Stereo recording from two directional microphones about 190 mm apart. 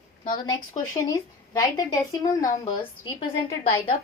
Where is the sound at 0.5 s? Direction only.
15° left (ahead or behind).